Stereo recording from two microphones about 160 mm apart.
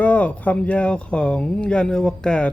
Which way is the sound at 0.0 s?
10° left (ahead or behind).